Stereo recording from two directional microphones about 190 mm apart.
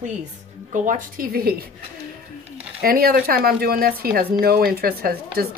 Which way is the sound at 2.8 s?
50° right (ahead or behind).